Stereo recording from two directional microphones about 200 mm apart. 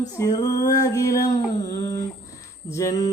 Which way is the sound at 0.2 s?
20° left (ahead or behind).